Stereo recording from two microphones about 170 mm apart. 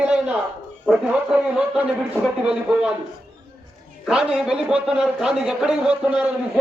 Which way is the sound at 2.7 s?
5° right (ahead or behind).